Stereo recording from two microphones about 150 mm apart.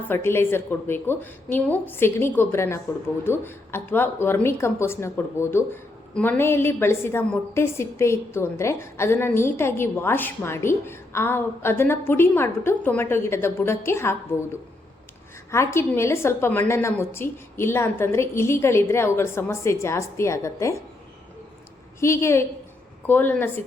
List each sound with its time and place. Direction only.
0.0 s a woman's voice: 15° left (ahead or behind)
15.5 s a woman's voice: 15° left (ahead or behind)
22.0 s a woman's voice: 20° left (ahead or behind)